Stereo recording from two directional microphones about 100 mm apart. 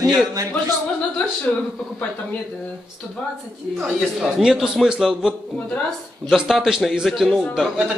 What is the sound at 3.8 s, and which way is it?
A man's voice, 5° right (ahead or behind).